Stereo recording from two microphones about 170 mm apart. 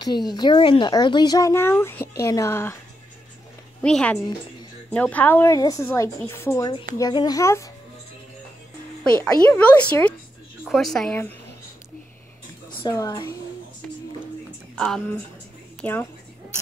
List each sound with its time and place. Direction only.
0.0 s speech: 25° left (ahead or behind)
3.8 s a woman's voice: 5° left (ahead or behind)
9.2 s a woman's voice: 10° left (ahead or behind)
12.8 s speech: 20° left (ahead or behind)
14.8 s a woman's voice: 5° left (ahead or behind)